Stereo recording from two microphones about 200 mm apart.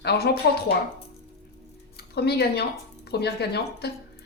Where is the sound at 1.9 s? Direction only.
55° left (ahead or behind).